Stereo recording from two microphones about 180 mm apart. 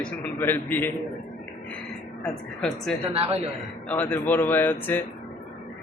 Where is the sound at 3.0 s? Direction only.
35° right (ahead or behind).